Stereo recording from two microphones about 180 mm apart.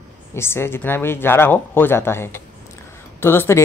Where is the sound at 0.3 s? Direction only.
15° left (ahead or behind).